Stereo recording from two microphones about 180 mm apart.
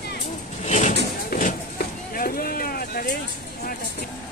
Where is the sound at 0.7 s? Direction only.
40° left (ahead or behind).